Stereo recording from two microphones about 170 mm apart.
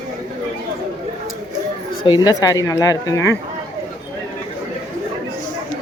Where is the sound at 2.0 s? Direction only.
25° left (ahead or behind).